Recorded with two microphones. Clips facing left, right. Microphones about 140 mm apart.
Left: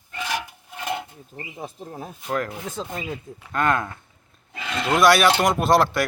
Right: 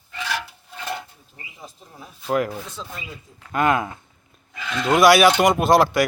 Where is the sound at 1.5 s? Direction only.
50° left (ahead or behind).